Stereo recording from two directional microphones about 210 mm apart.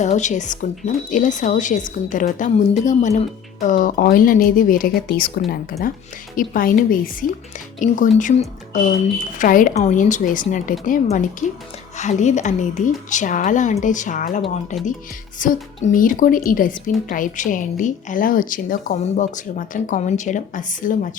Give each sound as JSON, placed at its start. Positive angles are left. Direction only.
{"t": 0.0, "sound": "a woman's voice", "side_deg": 35}
{"t": 6.3, "sound": "a woman's voice", "side_deg": 40}